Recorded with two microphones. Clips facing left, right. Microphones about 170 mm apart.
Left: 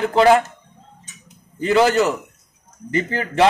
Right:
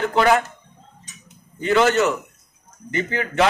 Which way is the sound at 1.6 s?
35° left (ahead or behind).